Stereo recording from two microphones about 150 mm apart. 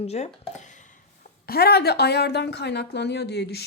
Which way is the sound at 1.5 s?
90° left.